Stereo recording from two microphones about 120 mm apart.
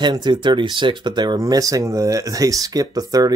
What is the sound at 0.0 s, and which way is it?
Speech, 40° right (ahead or behind).